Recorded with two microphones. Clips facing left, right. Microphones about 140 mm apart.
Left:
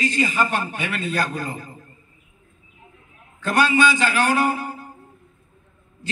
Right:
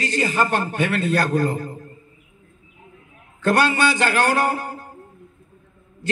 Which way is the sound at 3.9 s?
50° right (ahead or behind).